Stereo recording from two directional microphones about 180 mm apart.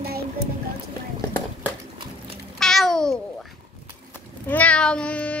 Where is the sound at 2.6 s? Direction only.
Centre (ahead or behind).